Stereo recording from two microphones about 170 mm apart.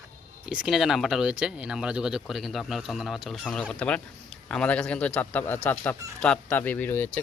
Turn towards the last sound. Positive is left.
turn(degrees=10)  # may be behind; listen again after turning